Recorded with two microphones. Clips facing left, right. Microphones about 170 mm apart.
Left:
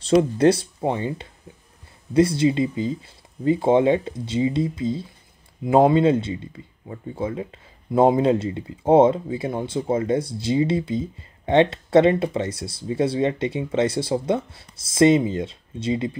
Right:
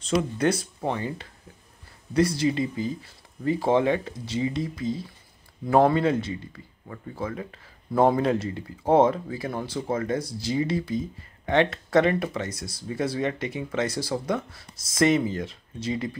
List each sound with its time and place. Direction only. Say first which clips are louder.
0.0 s speech: left 7 dB; 30° left (ahead or behind)